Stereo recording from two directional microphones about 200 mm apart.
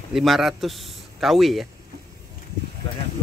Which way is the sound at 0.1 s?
Centre (ahead or behind).